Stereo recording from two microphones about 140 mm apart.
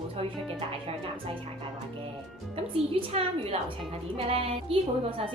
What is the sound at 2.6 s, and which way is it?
A woman's voice, 45° right (ahead or behind).